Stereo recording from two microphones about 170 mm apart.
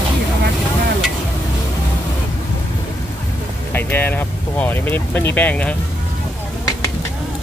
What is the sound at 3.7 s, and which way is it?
Speech, 10° left (ahead or behind).